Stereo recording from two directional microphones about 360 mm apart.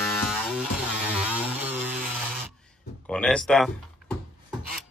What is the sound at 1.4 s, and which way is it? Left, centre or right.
Chainsaw, centre.